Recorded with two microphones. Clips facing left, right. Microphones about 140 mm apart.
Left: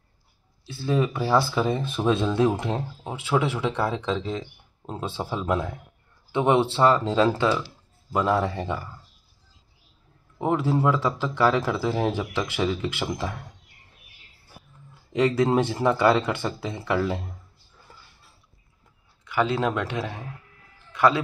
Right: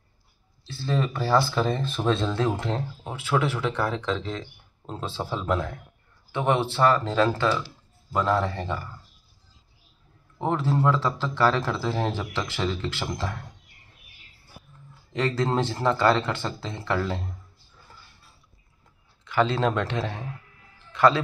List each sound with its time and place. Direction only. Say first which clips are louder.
0.7 s speech: left 3 dB; 10° left (ahead or behind)
10.4 s speech: left 2 dB; 15° left (ahead or behind)
15.1 s speech: left 4 dB; 15° left (ahead or behind)
19.2 s a man's voice: right 1 dB; 10° left (ahead or behind)